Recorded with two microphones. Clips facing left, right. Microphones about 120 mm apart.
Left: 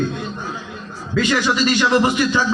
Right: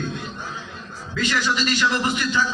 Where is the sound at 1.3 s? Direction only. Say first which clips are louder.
Left 4 dB; 45° left (ahead or behind).